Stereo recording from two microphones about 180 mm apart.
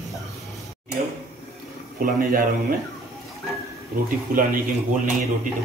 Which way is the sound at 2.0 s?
50° right (ahead or behind).